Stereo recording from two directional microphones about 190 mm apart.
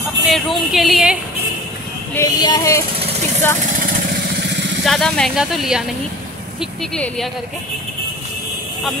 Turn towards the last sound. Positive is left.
turn(degrees=5)  # may be behind; listen again after turning